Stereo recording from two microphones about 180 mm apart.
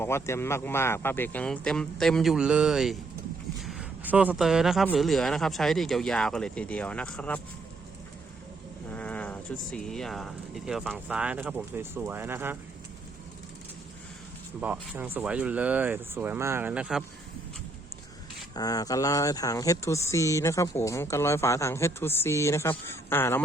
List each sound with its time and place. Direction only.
0.0 s speech: 15° left (ahead or behind)
8.9 s speech: 10° left (ahead or behind); by 12.5 s 15° right (ahead or behind)
14.6 s speech: 10° right (ahead or behind)
18.5 s speech: 20° left (ahead or behind)